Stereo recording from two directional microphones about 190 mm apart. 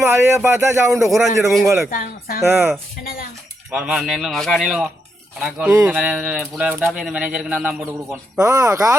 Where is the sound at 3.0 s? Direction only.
50° left (ahead or behind).